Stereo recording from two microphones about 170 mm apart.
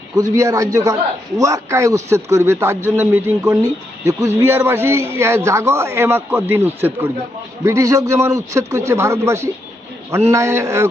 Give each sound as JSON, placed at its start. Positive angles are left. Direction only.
{"t": 0.2, "sound": "a man's voice", "side_deg": -20}